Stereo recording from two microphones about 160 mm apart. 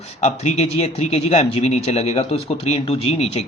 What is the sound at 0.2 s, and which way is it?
A man's voice, 45° left (ahead or behind).